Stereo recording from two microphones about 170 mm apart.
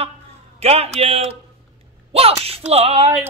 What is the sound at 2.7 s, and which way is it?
Speech, 35° right (ahead or behind).